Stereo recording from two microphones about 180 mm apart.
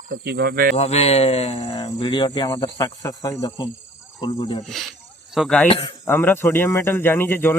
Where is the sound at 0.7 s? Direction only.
35° left (ahead or behind).